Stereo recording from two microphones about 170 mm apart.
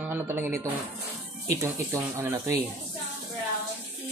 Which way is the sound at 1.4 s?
20° right (ahead or behind).